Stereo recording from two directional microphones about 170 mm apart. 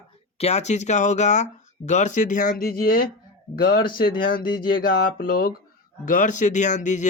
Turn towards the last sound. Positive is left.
turn(degrees=45)  # may be behind; listen again after turning